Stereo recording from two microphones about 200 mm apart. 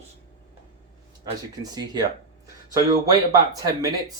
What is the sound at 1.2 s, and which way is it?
Speech, 20° right (ahead or behind).